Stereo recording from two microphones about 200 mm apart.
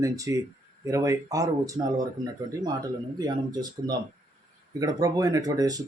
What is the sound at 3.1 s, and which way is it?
Speech, 20° right (ahead or behind).